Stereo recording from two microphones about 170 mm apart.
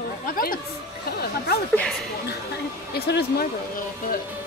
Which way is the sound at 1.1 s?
65° left (ahead or behind).